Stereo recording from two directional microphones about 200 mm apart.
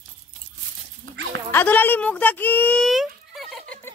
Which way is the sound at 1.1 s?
70° right (ahead or behind).